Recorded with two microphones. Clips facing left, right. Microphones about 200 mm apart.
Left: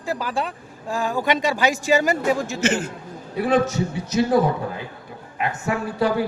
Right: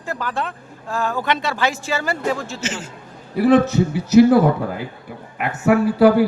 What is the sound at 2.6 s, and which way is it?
Speech, 60° left (ahead or behind).